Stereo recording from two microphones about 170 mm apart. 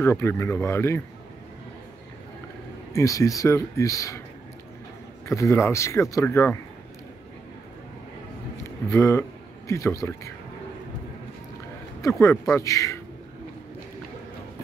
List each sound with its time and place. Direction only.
0.0 s speech: 15° left (ahead or behind)
2.9 s speech: 20° left (ahead or behind)
5.2 s speech: 15° left (ahead or behind)
8.6 s speech: 15° left (ahead or behind)
12.0 s speech: 15° left (ahead or behind)